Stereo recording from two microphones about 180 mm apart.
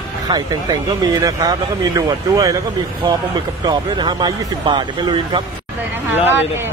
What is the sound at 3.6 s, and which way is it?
Speech, 25° right (ahead or behind).